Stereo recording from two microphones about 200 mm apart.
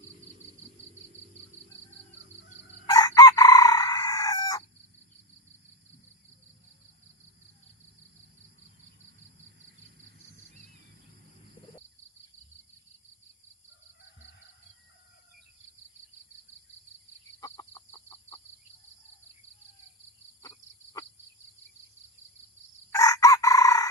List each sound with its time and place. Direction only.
2.8 s chicken: 20° left (ahead or behind)
17.4 s chicken: 15° left (ahead or behind)
22.9 s chicken: 15° left (ahead or behind)